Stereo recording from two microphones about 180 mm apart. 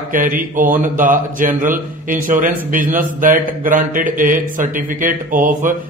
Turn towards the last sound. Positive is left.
turn(degrees=-50)  # may be behind; listen again after turning